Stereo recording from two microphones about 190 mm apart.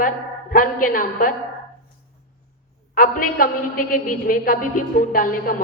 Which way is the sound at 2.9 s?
45° left (ahead or behind).